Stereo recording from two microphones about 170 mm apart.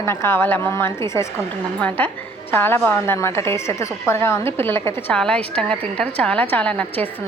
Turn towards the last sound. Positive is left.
turn(degrees=10)  # may be behind; listen again after turning